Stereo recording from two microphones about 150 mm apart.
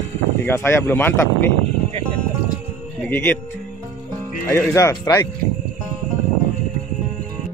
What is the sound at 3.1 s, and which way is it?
Speech, 10° left (ahead or behind).